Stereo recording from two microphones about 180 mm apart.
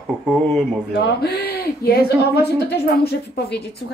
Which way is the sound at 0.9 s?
65° left (ahead or behind).